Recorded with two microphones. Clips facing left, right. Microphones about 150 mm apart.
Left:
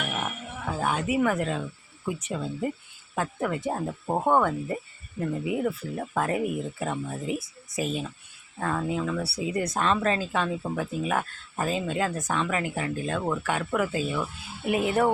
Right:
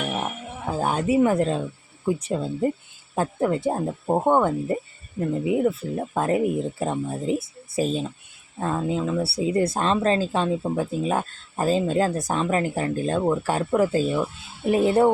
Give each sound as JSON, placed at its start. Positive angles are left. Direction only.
{"t": 0.2, "sound": "speech", "side_deg": -35}
{"t": 13.2, "sound": "speech", "side_deg": -25}